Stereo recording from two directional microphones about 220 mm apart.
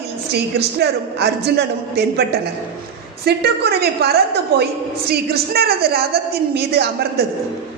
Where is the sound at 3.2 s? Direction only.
45° right (ahead or behind).